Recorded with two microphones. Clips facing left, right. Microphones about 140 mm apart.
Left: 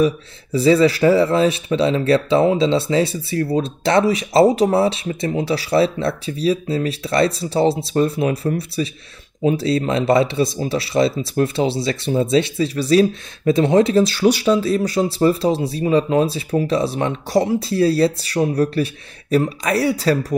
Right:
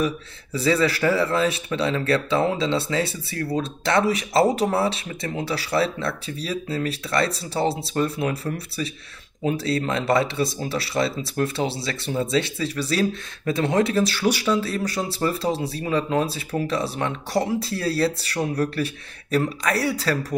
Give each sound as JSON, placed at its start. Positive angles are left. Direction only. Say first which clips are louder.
{"t": 0.0, "sound": "speech", "louder": "left 7 dB", "side_deg": 20}